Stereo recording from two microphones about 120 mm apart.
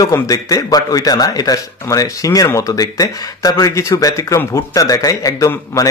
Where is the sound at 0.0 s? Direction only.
30° left (ahead or behind).